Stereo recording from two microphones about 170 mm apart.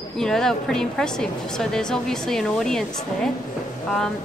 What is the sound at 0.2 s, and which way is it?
A woman's voice, 5° left (ahead or behind).